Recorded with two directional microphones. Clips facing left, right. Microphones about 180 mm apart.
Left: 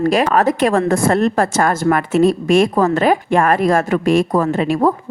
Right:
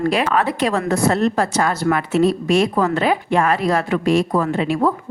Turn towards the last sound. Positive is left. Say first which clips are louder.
# left 3 dB
turn(degrees=45)  # may be behind; listen again after turning